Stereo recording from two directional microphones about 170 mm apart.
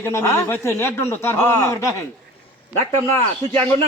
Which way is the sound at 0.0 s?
15° left (ahead or behind).